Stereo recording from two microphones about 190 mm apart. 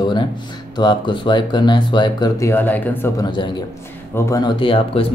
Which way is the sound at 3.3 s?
25° left (ahead or behind).